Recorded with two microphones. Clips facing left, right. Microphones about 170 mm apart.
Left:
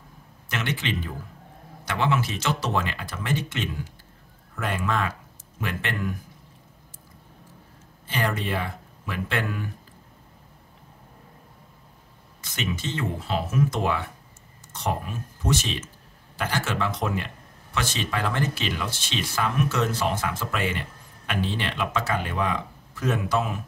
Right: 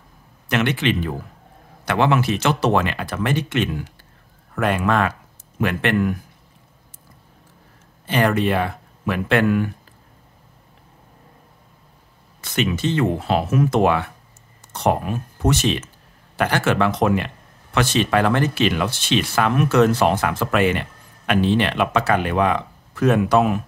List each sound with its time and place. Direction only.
0.5 s speech: 65° right (ahead or behind)
8.1 s speech: 65° right (ahead or behind)
12.4 s speech: 65° right (ahead or behind)